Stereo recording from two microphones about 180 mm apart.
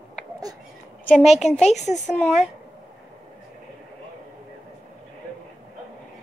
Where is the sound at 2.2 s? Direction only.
Centre (ahead or behind).